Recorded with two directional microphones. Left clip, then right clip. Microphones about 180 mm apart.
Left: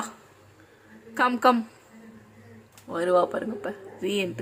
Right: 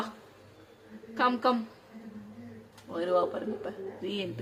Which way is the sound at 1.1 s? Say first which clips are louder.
Left 6 dB; 25° left (ahead or behind).